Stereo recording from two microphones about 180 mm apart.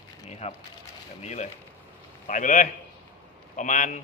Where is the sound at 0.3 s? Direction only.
35° left (ahead or behind).